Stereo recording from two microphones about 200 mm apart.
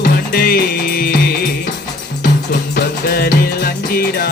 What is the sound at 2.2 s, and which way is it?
Music, 45° left (ahead or behind).